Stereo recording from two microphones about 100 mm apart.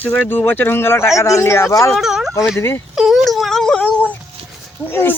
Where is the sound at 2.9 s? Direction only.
5° right (ahead or behind).